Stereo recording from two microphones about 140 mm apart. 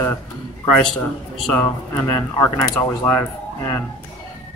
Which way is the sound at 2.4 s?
25° left (ahead or behind).